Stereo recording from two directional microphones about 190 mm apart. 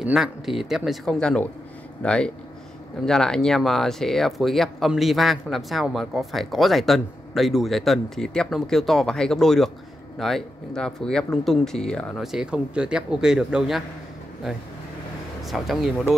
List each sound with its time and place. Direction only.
0.0 s speech: 5° right (ahead or behind)
15.4 s speech: centre (ahead or behind)